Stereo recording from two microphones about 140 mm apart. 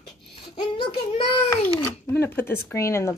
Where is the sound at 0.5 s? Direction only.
35° left (ahead or behind).